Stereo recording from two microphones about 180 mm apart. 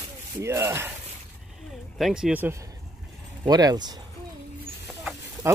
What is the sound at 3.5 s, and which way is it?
Speech, 20° right (ahead or behind).